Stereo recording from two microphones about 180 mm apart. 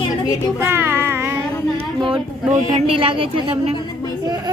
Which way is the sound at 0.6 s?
10° right (ahead or behind).